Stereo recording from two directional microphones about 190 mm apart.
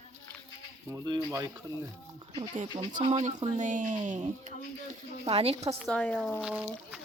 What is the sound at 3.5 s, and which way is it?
Speech, 40° right (ahead or behind).